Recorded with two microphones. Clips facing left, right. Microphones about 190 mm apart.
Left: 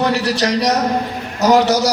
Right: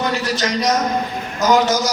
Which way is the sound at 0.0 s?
70° left (ahead or behind).